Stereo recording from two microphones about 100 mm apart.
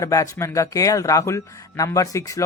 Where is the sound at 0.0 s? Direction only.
35° left (ahead or behind).